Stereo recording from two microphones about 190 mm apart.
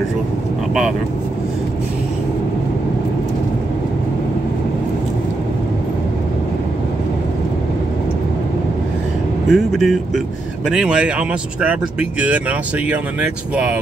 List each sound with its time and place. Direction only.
9.5 s speech: centre (ahead or behind)